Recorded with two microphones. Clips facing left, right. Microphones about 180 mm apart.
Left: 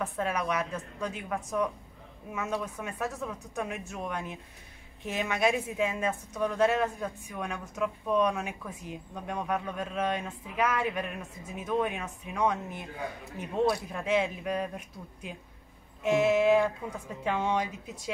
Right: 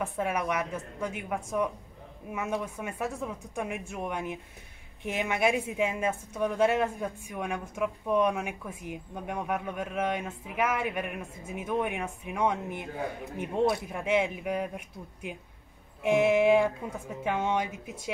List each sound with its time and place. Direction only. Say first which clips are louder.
0.0 s speech: right 1 dB; 10° right (ahead or behind)